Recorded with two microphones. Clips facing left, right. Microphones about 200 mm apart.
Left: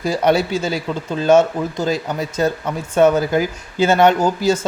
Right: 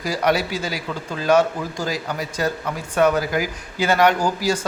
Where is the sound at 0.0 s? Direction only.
25° left (ahead or behind).